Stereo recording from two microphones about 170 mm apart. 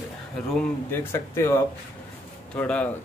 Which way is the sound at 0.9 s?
15° left (ahead or behind).